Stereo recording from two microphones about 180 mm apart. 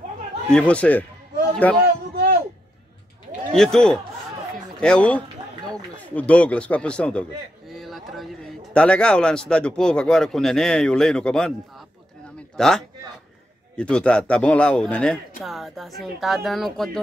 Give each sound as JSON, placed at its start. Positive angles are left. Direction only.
{"t": 0.5, "sound": "speech", "side_deg": 5}
{"t": 3.5, "sound": "a man's voice", "side_deg": 5}